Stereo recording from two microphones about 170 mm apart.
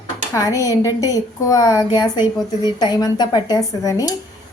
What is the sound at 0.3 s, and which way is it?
A woman's voice, 20° left (ahead or behind).